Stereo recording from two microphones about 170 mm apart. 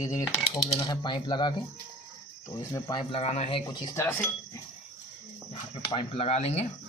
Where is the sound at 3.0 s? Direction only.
35° left (ahead or behind).